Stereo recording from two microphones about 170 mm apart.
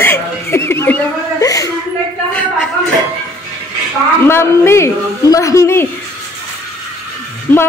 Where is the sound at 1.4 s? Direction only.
20° left (ahead or behind).